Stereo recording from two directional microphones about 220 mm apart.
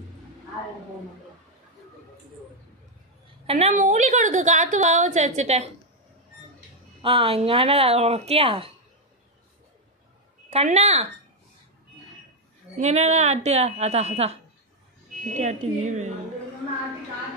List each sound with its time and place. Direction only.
3.4 s a woman's voice: 30° right (ahead or behind)
7.0 s a woman's voice: 25° right (ahead or behind)
10.5 s a woman's voice: 30° right (ahead or behind)
12.7 s a woman's voice: 30° right (ahead or behind)